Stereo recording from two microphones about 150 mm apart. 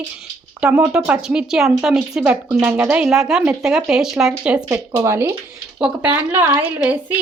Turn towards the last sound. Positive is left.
turn(degrees=-10)  # may be behind; listen again after turning